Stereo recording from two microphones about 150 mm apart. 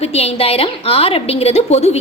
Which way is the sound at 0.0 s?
45° left (ahead or behind).